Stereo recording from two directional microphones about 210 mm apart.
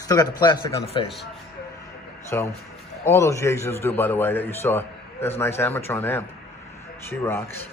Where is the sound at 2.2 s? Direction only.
15° left (ahead or behind).